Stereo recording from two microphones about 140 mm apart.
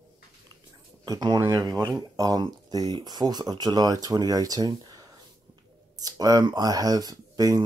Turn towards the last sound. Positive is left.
turn(degrees=-25)  # may be behind; listen again after turning